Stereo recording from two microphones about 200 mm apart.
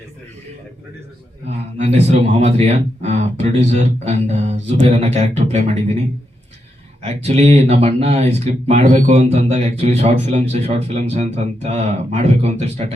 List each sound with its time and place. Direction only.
1.5 s speech: 35° right (ahead or behind)
7.0 s speech: 30° right (ahead or behind)